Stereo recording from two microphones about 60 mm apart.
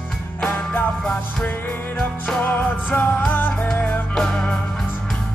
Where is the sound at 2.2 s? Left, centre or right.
Left.